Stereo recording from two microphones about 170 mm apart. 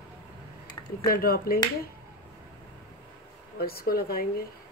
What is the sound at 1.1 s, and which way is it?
Speech, 60° left (ahead or behind).